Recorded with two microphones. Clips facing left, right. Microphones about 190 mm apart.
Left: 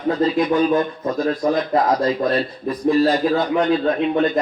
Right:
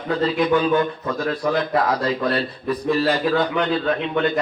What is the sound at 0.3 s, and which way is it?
A man's voice, 35° left (ahead or behind).